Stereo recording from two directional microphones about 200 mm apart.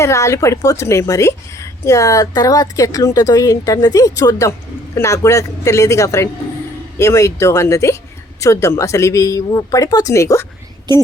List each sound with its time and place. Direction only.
0.0 s speech: 15° left (ahead or behind)
10.9 s a woman's voice: 20° right (ahead or behind)